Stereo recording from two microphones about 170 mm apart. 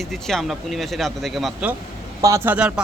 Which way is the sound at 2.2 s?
20° right (ahead or behind).